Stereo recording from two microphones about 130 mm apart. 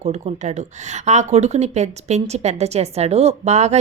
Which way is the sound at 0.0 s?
55° right (ahead or behind).